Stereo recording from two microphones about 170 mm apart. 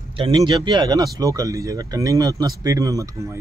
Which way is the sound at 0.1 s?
30° right (ahead or behind).